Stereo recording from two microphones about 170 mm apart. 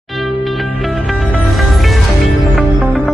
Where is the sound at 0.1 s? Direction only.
Centre (ahead or behind).